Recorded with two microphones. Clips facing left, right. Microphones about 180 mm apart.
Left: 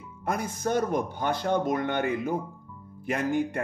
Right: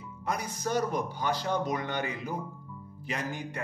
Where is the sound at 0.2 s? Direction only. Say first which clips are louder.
Left 4 dB; 50° left (ahead or behind).